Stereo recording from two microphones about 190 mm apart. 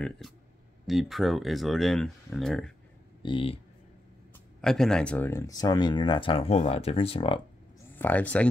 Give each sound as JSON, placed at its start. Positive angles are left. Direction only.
{"t": 0.8, "sound": "speech", "side_deg": 0}
{"t": 3.2, "sound": "speech", "side_deg": 25}
{"t": 4.6, "sound": "speech", "side_deg": 5}
{"t": 7.9, "sound": "speech", "side_deg": 10}